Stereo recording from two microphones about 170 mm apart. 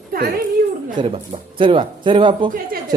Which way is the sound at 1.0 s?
35° right (ahead or behind).